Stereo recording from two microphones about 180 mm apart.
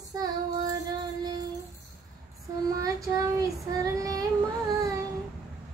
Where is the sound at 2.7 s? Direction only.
20° right (ahead or behind).